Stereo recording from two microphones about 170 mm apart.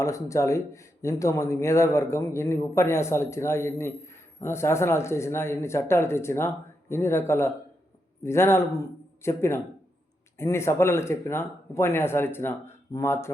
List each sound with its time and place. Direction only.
0.0 s speech: 20° left (ahead or behind)